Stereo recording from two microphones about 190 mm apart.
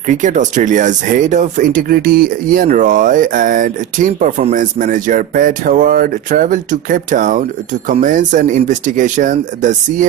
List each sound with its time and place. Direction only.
0.1 s speech: 40° right (ahead or behind)